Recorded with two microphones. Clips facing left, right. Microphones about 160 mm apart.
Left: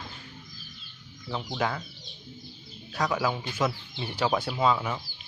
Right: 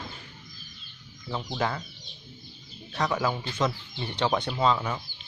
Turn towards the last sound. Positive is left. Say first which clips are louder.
# even
turn(degrees=5)  # may be behind; listen again after turning